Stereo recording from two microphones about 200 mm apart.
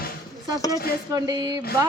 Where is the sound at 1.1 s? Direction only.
20° right (ahead or behind).